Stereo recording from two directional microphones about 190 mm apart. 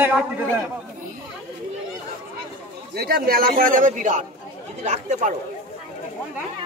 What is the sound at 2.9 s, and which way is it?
A man's voice, 55° right (ahead or behind).